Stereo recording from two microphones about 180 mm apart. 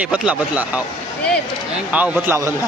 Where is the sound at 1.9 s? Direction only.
5° right (ahead or behind).